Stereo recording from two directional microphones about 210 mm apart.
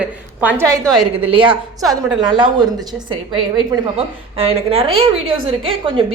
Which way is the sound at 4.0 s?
25° right (ahead or behind).